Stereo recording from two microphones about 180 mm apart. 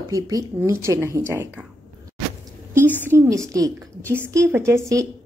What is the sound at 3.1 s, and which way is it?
A woman's voice, 15° right (ahead or behind).